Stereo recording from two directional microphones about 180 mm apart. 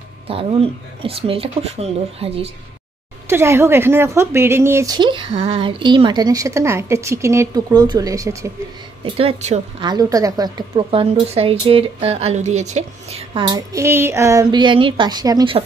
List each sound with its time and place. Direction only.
0.3 s speech: 30° right (ahead or behind)
3.3 s a woman's voice: 15° right (ahead or behind)
9.0 s a woman's voice: 30° right (ahead or behind)